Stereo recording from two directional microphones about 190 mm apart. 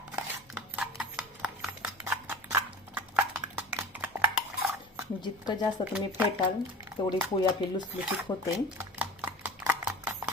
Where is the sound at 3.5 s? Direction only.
10° right (ahead or behind).